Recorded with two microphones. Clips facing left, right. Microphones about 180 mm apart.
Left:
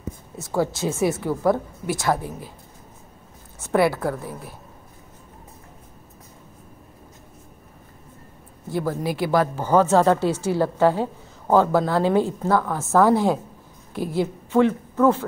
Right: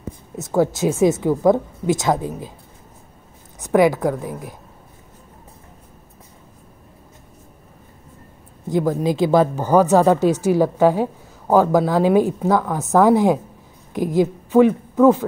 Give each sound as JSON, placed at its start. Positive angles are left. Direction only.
{"t": 0.7, "sound": "a woman's voice", "side_deg": -15}
{"t": 3.5, "sound": "a woman's voice", "side_deg": -15}
{"t": 8.6, "sound": "a woman's voice", "side_deg": -15}